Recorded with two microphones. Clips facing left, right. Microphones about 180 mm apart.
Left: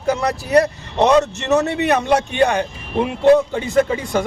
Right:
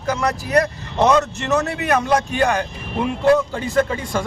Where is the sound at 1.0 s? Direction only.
25° left (ahead or behind).